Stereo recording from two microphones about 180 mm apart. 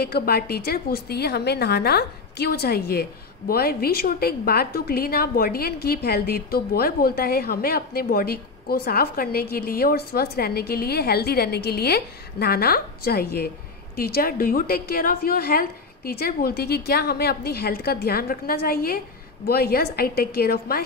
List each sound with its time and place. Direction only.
0.0 s a woman's voice: 60° left (ahead or behind)